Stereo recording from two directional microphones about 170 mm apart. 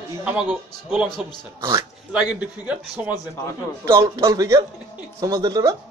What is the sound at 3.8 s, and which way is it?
A man's voice, 20° right (ahead or behind).